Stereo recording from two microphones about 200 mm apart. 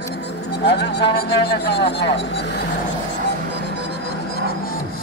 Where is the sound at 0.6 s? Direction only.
55° left (ahead or behind).